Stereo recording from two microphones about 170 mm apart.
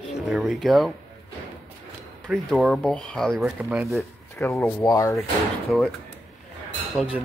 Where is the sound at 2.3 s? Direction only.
Centre (ahead or behind).